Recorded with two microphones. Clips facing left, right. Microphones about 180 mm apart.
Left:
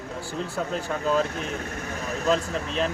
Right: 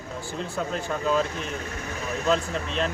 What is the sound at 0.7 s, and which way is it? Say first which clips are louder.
Speech: left 1 dB; centre (ahead or behind).